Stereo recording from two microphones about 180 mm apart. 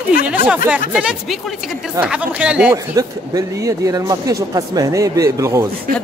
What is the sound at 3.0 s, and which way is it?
Speech, 20° right (ahead or behind).